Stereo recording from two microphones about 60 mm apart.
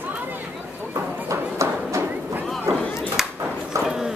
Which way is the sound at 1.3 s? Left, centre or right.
Right.